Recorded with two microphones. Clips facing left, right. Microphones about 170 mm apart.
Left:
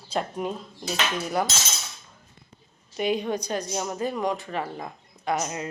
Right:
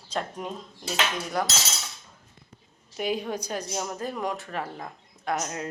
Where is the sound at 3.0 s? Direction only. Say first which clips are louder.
Left 3 dB; 5° right (ahead or behind).